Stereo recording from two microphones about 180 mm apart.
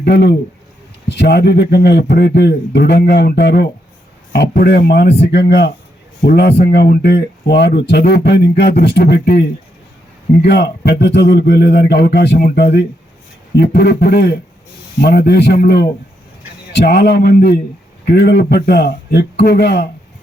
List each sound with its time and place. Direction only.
0.0 s speech: 70° left (ahead or behind)
10.4 s speech: 65° left (ahead or behind)